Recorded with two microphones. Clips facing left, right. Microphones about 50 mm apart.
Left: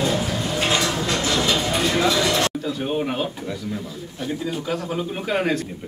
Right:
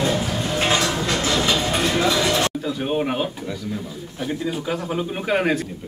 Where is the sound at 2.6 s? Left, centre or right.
Centre.